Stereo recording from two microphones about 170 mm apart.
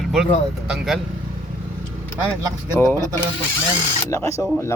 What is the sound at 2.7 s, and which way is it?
Speech, 15° left (ahead or behind).